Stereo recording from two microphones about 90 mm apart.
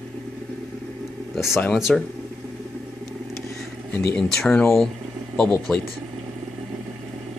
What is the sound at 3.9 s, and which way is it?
Speech, 5° left (ahead or behind).